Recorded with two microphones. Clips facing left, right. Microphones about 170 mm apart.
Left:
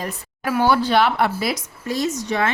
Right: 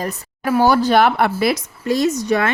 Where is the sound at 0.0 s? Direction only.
40° right (ahead or behind).